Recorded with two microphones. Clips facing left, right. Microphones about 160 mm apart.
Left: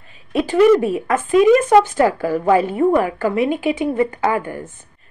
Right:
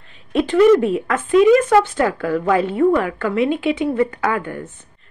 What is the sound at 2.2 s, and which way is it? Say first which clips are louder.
Speech: left 1 dB; 30° left (ahead or behind).